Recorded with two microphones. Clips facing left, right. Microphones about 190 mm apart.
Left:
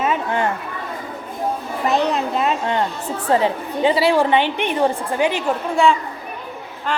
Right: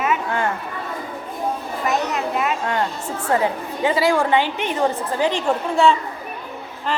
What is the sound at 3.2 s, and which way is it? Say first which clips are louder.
A woman's voice: left 2 dB; 20° left (ahead or behind).